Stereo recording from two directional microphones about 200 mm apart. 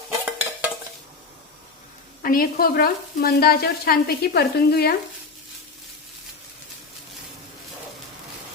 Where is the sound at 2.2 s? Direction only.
45° left (ahead or behind).